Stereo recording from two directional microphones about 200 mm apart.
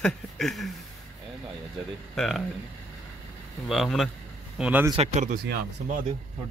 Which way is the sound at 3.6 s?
Centre (ahead or behind).